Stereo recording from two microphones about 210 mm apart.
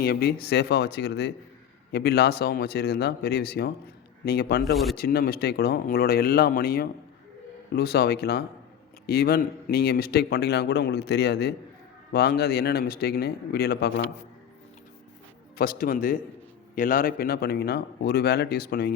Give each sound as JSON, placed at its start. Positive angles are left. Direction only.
{"t": 0.0, "sound": "a man's voice", "side_deg": 50}
{"t": 15.5, "sound": "a man's voice", "side_deg": 45}